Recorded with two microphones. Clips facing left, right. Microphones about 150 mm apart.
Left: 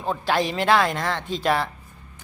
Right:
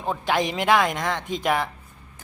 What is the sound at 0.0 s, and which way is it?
A woman's voice, 15° right (ahead or behind).